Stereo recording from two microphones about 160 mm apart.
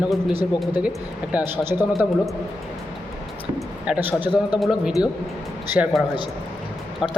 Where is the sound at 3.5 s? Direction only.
10° right (ahead or behind).